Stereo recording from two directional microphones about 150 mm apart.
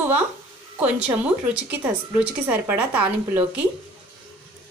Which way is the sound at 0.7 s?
10° right (ahead or behind).